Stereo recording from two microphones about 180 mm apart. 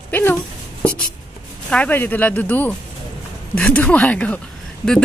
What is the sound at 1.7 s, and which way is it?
Speech, 10° left (ahead or behind).